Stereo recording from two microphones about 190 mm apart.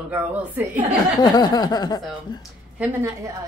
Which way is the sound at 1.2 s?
20° left (ahead or behind).